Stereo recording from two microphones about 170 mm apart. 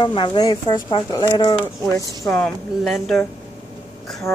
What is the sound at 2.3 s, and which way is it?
Speech, 5° left (ahead or behind).